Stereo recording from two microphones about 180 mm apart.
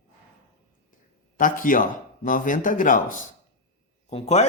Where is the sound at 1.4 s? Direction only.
50° left (ahead or behind).